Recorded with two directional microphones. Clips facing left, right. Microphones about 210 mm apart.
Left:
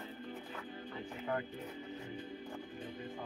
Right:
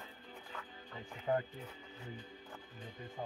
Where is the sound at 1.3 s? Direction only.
35° right (ahead or behind).